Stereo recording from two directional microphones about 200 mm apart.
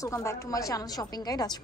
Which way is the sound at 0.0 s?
15° left (ahead or behind).